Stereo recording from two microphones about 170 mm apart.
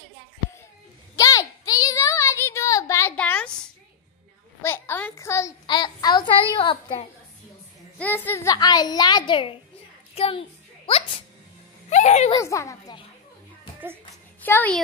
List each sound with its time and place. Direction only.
1.1 s child singing: 20° left (ahead or behind)
4.6 s a sound: 15° left (ahead or behind); by 7.1 s 30° left (ahead or behind)
8.0 s speech: 10° left (ahead or behind)
8.5 s a woman's voice: 25° left (ahead or behind)
10.9 s music: 35° left (ahead or behind)
11.9 s speech: 45° left (ahead or behind)
12.3 s a woman's voice: 20° left (ahead or behind)
14.4 s a child's voice: 10° left (ahead or behind)